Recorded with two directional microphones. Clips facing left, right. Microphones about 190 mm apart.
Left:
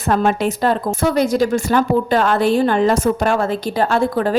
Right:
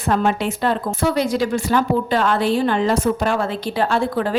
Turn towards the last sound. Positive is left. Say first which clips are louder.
# left 3 dB
turn(degrees=45)  # may be behind; listen again after turning